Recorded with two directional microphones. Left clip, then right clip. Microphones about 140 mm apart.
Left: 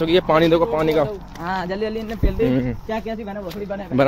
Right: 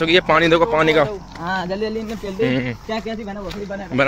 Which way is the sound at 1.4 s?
40° right (ahead or behind).